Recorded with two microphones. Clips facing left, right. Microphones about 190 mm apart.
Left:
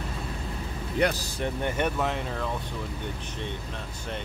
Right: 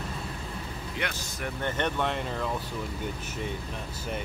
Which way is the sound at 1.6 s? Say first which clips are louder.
Even; 10° left (ahead or behind).